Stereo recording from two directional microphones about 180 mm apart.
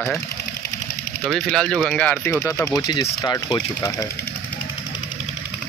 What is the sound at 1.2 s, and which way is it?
Speech, centre (ahead or behind).